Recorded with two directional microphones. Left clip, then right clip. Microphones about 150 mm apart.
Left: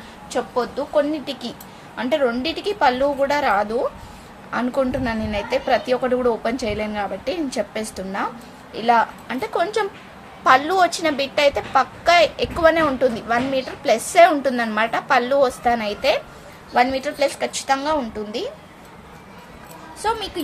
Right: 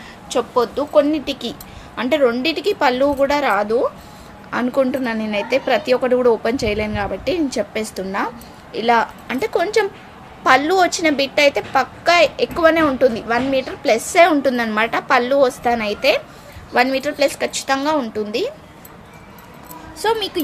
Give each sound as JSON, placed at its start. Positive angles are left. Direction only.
{"t": 0.3, "sound": "a woman's voice", "side_deg": -55}
{"t": 20.0, "sound": "speech", "side_deg": -50}